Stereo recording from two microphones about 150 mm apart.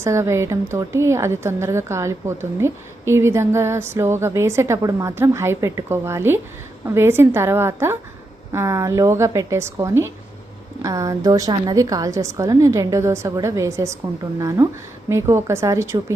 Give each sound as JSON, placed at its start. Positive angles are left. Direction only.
{"t": 0.0, "sound": "a woman's voice", "side_deg": -20}